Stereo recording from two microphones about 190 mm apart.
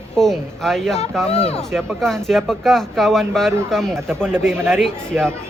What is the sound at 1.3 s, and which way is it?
Speech, 35° left (ahead or behind).